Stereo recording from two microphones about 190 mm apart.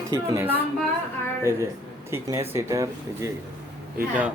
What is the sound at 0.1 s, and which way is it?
Speech, 10° right (ahead or behind).